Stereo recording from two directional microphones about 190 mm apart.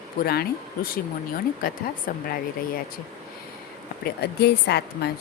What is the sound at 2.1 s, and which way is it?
Speech, 50° left (ahead or behind).